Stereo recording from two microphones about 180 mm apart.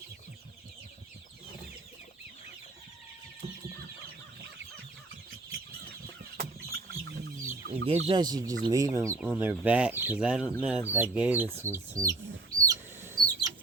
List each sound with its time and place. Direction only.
5.5 s a sound: 60° right (ahead or behind)
7.9 s speech: 30° right (ahead or behind); by 12.1 s 15° right (ahead or behind)
12.6 s chicken: 20° right (ahead or behind)